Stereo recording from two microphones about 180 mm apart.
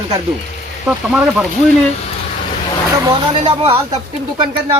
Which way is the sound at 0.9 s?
5° right (ahead or behind).